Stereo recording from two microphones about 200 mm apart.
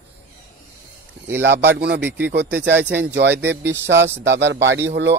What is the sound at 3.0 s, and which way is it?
A man's voice, 60° right (ahead or behind).